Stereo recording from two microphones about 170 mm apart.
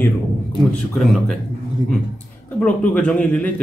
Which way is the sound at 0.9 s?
Centre (ahead or behind).